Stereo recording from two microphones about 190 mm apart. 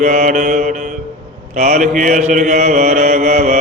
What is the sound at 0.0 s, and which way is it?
Mantra, 40° right (ahead or behind).